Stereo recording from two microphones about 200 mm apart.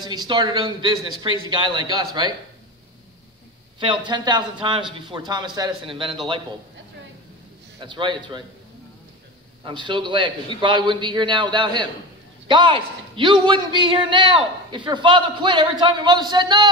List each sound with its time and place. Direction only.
0.0 s a man's voice: 20° right (ahead or behind)
3.8 s a man's voice: 25° right (ahead or behind)
7.8 s a man's voice: 25° right (ahead or behind)
9.7 s a man's voice: 25° right (ahead or behind)